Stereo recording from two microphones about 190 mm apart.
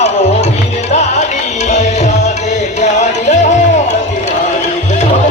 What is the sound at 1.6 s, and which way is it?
Tabla, 40° left (ahead or behind).